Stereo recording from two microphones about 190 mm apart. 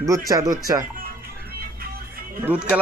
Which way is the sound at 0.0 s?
20° right (ahead or behind).